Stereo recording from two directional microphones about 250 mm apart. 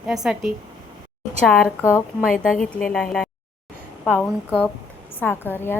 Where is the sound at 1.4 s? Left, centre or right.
Centre.